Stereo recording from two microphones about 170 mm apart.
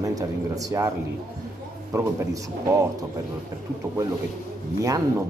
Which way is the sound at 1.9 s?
20° right (ahead or behind).